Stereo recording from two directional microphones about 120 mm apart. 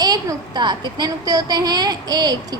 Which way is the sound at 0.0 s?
35° right (ahead or behind).